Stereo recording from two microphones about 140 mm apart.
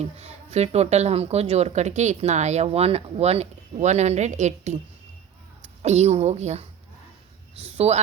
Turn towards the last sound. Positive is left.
turn(degrees=-50)  # may be behind; listen again after turning